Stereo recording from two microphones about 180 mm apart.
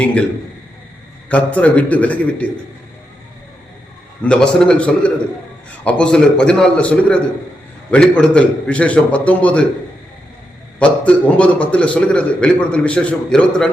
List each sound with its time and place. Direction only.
0.0 s a sound: 5° left (ahead or behind)
1.3 s a man's voice: 10° left (ahead or behind)
4.2 s a man's voice: 5° left (ahead or behind)
10.8 s a man's voice: 5° left (ahead or behind)